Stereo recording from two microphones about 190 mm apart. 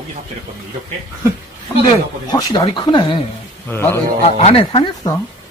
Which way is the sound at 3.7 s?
10° left (ahead or behind).